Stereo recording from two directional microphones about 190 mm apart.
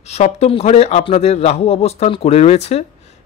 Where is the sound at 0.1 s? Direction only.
35° left (ahead or behind).